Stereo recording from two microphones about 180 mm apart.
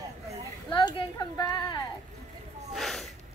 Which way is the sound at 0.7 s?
25° left (ahead or behind).